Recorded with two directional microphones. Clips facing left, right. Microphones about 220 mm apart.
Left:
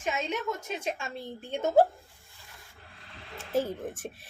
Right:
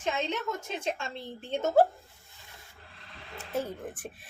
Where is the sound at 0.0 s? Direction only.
10° left (ahead or behind).